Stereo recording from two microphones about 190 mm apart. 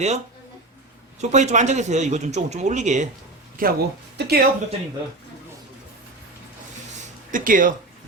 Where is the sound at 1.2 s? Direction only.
35° right (ahead or behind); by 4.4 s 55° right (ahead or behind).